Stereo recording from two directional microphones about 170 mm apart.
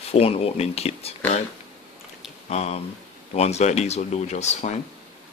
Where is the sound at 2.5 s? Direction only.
40° left (ahead or behind).